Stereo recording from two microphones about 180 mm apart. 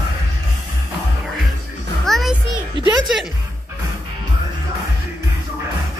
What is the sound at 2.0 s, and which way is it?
Music, centre (ahead or behind).